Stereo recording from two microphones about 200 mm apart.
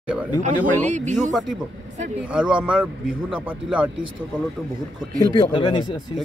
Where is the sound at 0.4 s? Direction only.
35° right (ahead or behind).